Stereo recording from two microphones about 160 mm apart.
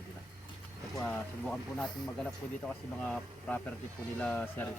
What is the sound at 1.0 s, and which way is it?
Speech, 5° left (ahead or behind).